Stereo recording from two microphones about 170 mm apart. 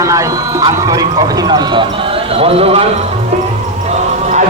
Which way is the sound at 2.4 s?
35° right (ahead or behind).